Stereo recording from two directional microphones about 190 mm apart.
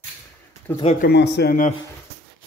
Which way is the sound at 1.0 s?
60° left (ahead or behind).